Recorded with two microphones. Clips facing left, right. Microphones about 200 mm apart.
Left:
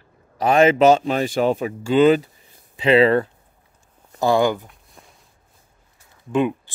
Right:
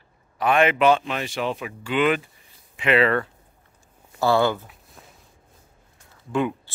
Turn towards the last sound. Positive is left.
turn(degrees=20)  # may be behind; listen again after turning